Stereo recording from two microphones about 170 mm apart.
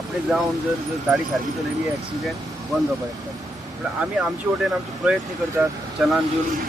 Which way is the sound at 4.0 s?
5° right (ahead or behind).